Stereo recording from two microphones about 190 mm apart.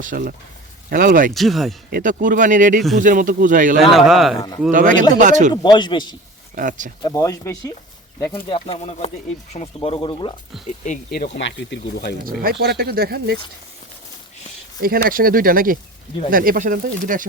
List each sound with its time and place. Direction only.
0.0 s speech: 45° right (ahead or behind)
1.3 s speech: centre (ahead or behind)
1.9 s speech: 45° right (ahead or behind)
3.9 s speech: centre (ahead or behind)
4.7 s speech: 45° right (ahead or behind)
5.6 s speech: 25° left (ahead or behind)
6.6 s speech: 45° right (ahead or behind)
7.0 s speech: 15° left (ahead or behind)
8.3 s speech: 30° left (ahead or behind)
10.7 s speech: 40° left (ahead or behind)
11.3 s speech: 70° left (ahead or behind)
12.2 s speech: 50° right (ahead or behind)
14.8 s speech: 50° right (ahead or behind)